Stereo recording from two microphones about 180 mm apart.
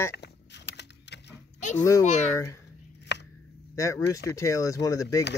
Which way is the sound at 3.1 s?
75° left (ahead or behind).